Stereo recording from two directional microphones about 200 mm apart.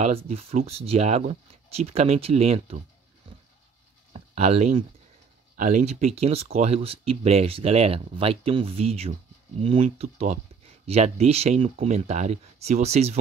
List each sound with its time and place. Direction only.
0.0 s speech: 30° right (ahead or behind)
4.1 s a sound: 30° right (ahead or behind)
5.6 s speech: 40° right (ahead or behind)